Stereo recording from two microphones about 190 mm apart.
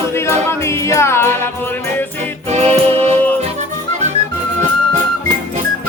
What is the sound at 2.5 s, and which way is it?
Music, 35° right (ahead or behind).